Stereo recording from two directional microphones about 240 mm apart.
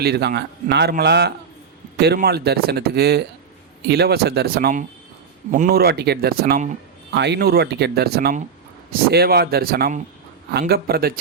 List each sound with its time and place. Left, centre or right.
0.0 s a man's voice: right